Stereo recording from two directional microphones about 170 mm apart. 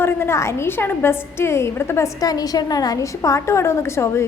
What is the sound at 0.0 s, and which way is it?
A woman's voice, 15° left (ahead or behind).